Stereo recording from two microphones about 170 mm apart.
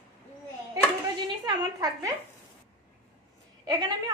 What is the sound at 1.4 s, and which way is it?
Speech, 20° right (ahead or behind).